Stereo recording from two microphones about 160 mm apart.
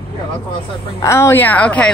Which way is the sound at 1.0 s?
15° left (ahead or behind).